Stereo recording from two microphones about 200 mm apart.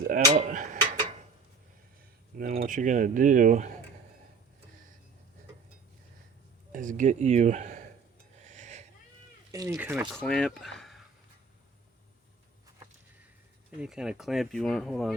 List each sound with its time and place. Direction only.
0.0 s speech: 40° right (ahead or behind)
2.3 s a sound: 40° right (ahead or behind)
2.6 s speech: 40° right (ahead or behind)
6.7 s speech: 40° right (ahead or behind)
8.4 s a sound: 35° right (ahead or behind)
9.5 s speech: 15° right (ahead or behind)
10.1 s speech: 5° left (ahead or behind)
13.8 s speech: 5° right (ahead or behind)